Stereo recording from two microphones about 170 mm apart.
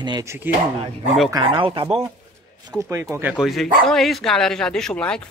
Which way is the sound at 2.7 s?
20° right (ahead or behind).